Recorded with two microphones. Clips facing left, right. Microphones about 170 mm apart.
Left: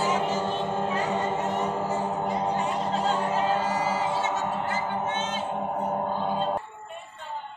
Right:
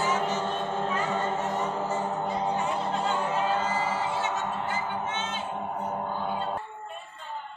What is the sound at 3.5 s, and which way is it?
Music, 20° left (ahead or behind).